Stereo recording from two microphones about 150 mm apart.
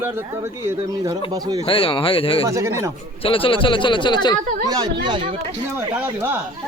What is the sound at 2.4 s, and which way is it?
Speech, 20° right (ahead or behind).